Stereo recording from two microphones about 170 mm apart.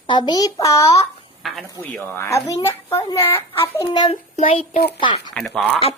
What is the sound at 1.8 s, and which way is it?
A child's voice, 15° left (ahead or behind).